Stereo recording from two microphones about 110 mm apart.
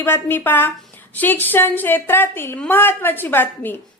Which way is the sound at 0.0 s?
20° left (ahead or behind).